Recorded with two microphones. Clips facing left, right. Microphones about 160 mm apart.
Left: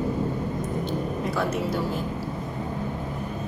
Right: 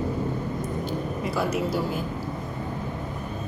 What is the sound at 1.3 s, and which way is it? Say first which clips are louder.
Speech: right 2 dB; 5° right (ahead or behind).